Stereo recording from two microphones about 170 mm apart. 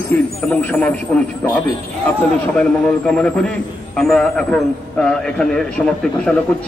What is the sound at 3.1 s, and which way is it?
A man's voice, 5° left (ahead or behind).